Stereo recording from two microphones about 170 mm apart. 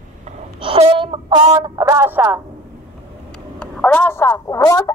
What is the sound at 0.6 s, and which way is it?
Speech, 30° right (ahead or behind).